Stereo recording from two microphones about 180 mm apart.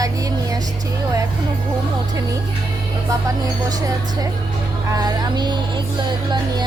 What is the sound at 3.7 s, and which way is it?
Speech, 20° right (ahead or behind).